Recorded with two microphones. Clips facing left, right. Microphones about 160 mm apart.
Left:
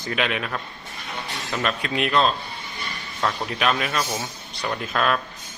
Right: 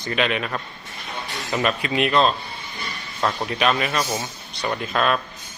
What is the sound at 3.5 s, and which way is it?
Speech, centre (ahead or behind).